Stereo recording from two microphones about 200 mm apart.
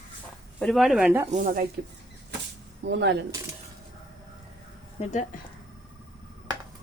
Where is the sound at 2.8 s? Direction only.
60° right (ahead or behind).